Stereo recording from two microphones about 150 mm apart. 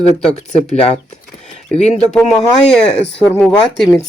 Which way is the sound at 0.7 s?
45° left (ahead or behind).